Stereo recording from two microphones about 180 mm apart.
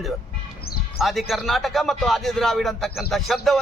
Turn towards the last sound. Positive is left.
turn(degrees=0)  # may be behind; listen again after turning